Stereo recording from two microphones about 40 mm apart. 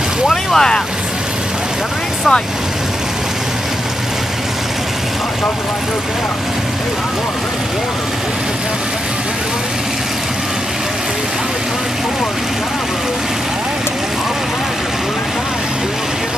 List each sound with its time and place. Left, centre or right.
0.3 s speech: centre